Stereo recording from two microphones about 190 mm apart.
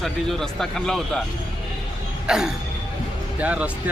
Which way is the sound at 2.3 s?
5° right (ahead or behind).